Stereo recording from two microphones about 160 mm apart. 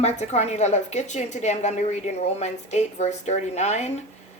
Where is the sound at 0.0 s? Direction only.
45° left (ahead or behind).